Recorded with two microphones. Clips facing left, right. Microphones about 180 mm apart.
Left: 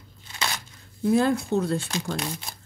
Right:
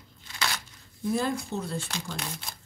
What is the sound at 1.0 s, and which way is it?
Speech, 65° left (ahead or behind).